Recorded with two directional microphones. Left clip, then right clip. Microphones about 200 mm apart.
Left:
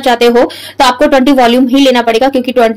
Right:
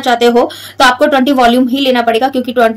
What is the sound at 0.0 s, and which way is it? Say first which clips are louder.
A woman's voice: left 2 dB; 30° left (ahead or behind).